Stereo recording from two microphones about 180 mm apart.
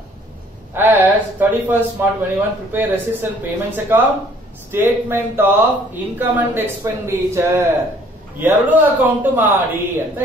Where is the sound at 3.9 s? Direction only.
10° right (ahead or behind).